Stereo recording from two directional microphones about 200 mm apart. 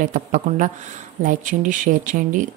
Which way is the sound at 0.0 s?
40° right (ahead or behind).